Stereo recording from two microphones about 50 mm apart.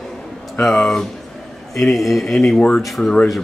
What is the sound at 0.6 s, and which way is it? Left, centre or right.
Speech, centre.